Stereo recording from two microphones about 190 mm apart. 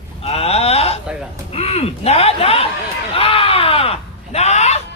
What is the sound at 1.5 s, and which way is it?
Speech, 30° left (ahead or behind).